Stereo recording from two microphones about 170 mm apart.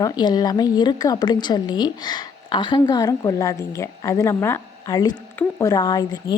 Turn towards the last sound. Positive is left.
turn(degrees=20)  # may be behind; listen again after turning